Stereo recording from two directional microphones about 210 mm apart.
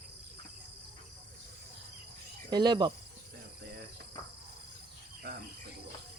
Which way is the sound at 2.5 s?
20° right (ahead or behind).